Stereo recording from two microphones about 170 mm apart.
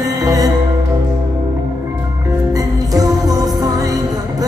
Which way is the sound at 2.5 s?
20° right (ahead or behind).